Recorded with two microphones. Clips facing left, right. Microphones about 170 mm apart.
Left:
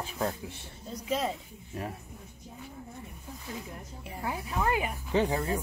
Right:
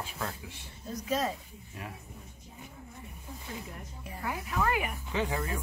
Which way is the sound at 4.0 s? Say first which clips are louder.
Left 1 dB; 25° left (ahead or behind).